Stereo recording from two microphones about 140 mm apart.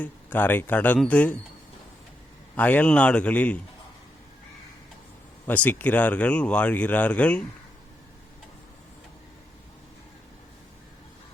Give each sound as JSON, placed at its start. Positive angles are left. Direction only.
{"t": 0.0, "sound": "speech", "side_deg": 10}
{"t": 2.6, "sound": "speech", "side_deg": 10}
{"t": 5.5, "sound": "speech", "side_deg": 10}